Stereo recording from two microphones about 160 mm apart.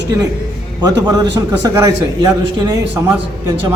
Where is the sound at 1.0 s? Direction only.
30° right (ahead or behind).